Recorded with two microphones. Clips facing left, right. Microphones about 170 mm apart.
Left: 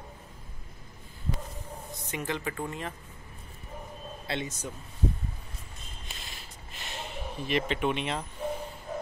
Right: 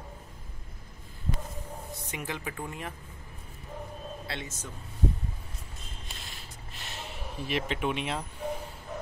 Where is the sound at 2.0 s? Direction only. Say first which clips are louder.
Left 4 dB; 10° right (ahead or behind).